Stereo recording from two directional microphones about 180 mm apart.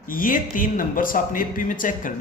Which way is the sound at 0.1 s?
50° left (ahead or behind).